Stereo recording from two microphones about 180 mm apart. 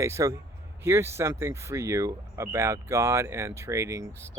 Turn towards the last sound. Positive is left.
turn(degrees=-15)  # may be behind; listen again after turning